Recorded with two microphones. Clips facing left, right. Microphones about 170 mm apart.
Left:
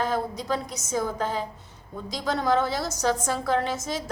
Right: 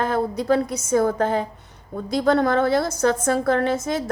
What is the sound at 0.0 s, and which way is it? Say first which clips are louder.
A woman's voice: right 5 dB; 55° right (ahead or behind).